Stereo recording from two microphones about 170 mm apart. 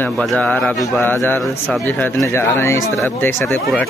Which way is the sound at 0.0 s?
5° left (ahead or behind).